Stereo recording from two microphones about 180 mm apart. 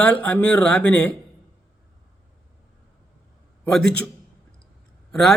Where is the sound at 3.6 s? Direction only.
5° left (ahead or behind).